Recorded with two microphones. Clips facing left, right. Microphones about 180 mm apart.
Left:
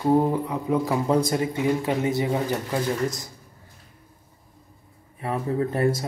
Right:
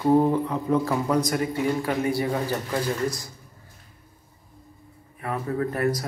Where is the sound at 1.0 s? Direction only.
25° left (ahead or behind).